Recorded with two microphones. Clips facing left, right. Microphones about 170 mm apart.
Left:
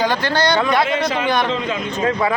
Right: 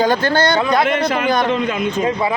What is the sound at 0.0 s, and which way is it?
Speech, 45° right (ahead or behind).